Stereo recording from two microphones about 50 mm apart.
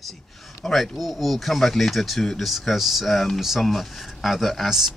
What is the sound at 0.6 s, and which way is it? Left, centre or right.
Speech, centre.